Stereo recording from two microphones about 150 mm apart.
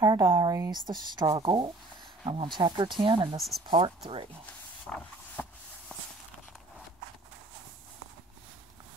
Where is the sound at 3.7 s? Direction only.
40° right (ahead or behind).